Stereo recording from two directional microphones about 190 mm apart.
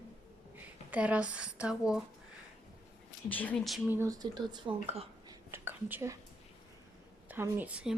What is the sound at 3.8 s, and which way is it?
Speech, 15° right (ahead or behind).